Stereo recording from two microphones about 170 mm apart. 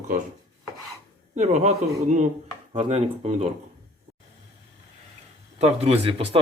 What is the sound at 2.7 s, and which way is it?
Speech, 35° right (ahead or behind).